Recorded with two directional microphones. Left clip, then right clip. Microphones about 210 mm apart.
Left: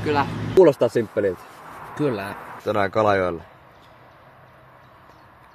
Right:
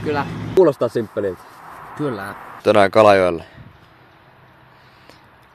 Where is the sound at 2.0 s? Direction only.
10° left (ahead or behind).